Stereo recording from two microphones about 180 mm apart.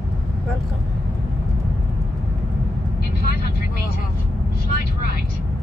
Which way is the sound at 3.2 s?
60° left (ahead or behind).